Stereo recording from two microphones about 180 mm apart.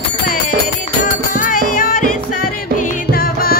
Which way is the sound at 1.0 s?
45° left (ahead or behind).